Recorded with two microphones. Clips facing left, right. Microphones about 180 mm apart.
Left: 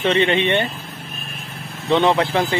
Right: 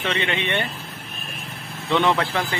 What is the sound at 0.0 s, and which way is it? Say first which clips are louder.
Speech: left 8 dB; 30° left (ahead or behind).